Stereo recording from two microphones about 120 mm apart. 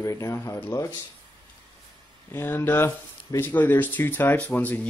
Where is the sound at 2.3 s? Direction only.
20° left (ahead or behind).